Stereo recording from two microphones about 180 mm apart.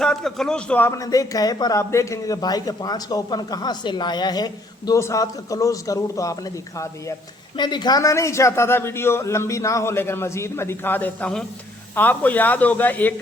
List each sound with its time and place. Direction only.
0.0 s a man's voice: centre (ahead or behind)